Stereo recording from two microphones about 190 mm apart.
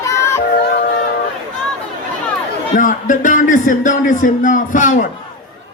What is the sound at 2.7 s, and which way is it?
Speech, 40° left (ahead or behind).